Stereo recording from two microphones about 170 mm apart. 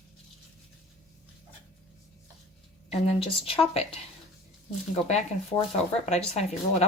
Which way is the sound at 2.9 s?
35° left (ahead or behind).